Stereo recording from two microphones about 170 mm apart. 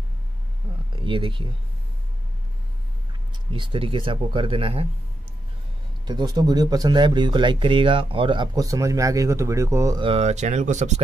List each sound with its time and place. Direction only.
0.9 s speech: 30° right (ahead or behind)
3.5 s speech: 30° right (ahead or behind)
6.0 s speech: 25° right (ahead or behind)
10.0 s speech: 40° right (ahead or behind)